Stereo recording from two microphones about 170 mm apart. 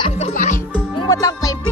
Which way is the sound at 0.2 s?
50° left (ahead or behind).